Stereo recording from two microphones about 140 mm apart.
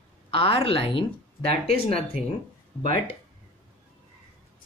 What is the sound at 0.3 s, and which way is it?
A woman's voice, 40° left (ahead or behind).